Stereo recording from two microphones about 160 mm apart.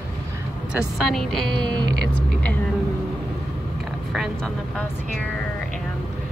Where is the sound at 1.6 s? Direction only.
25° right (ahead or behind).